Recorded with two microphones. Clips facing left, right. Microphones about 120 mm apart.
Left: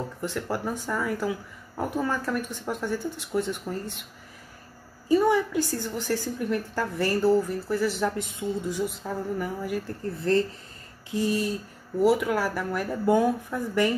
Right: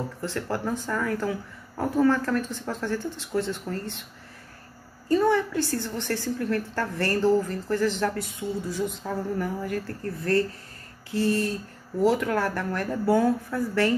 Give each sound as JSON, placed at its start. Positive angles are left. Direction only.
{"t": 0.2, "sound": "speech", "side_deg": 10}
{"t": 5.0, "sound": "speech", "side_deg": 10}
{"t": 8.8, "sound": "a woman's voice", "side_deg": 5}
{"t": 9.8, "sound": "speech", "side_deg": 20}